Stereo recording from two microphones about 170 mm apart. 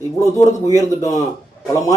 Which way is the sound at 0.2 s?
20° left (ahead or behind).